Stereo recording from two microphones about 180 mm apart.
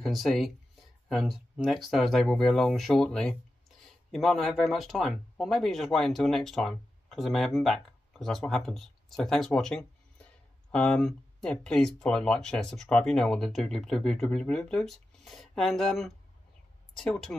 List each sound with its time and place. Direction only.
0.0 s speech: centre (ahead or behind)